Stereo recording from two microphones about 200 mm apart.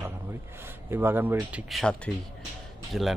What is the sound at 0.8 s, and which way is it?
Speech, 10° right (ahead or behind).